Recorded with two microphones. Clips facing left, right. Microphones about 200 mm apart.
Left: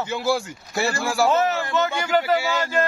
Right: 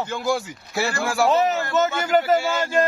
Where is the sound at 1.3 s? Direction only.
15° right (ahead or behind).